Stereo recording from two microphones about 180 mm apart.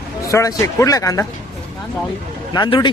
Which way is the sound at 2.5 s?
25° left (ahead or behind).